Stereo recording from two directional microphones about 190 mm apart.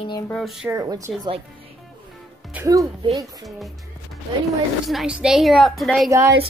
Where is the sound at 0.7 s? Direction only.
20° right (ahead or behind).